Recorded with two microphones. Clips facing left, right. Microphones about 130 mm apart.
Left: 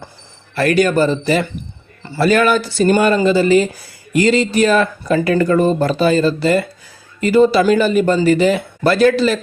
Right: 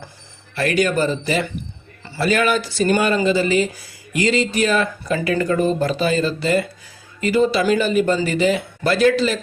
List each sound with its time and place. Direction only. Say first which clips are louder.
0.5 s speech: left 5 dB; 45° left (ahead or behind)